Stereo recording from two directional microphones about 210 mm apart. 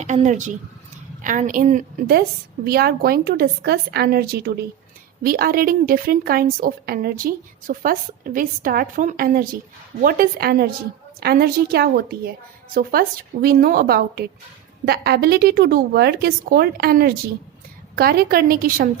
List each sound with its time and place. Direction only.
0.0 s a woman's voice: 35° right (ahead or behind)